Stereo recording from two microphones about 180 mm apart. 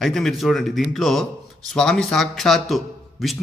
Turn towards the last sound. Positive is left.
turn(degrees=0)  # may be behind; listen again after turning